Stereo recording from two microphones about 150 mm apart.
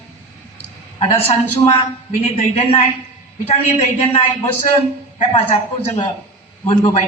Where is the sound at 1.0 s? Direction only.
45° left (ahead or behind).